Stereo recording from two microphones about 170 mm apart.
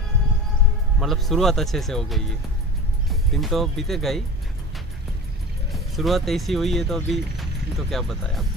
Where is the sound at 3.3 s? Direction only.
Centre (ahead or behind).